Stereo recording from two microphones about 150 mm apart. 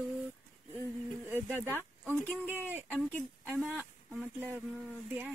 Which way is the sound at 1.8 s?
15° right (ahead or behind).